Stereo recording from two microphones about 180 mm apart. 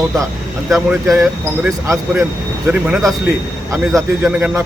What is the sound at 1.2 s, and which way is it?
Speech, 10° right (ahead or behind).